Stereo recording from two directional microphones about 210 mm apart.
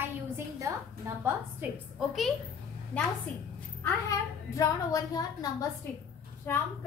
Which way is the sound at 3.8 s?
15° left (ahead or behind).